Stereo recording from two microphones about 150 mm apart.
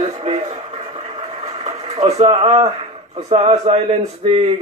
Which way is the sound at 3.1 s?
45° right (ahead or behind).